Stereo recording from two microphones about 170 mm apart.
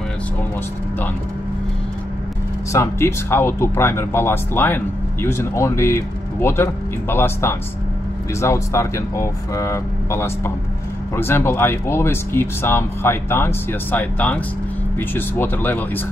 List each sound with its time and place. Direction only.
2.7 s speech: 15° left (ahead or behind)